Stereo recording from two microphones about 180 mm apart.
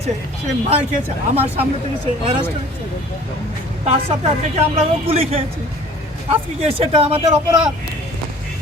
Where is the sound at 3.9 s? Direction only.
35° right (ahead or behind).